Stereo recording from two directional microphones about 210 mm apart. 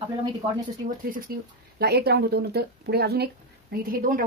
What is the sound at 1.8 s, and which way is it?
Speech, 50° right (ahead or behind).